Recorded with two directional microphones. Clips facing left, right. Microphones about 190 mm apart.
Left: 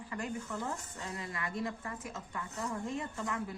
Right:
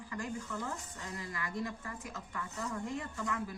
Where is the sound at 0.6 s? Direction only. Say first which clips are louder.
Left 2 dB; 20° left (ahead or behind).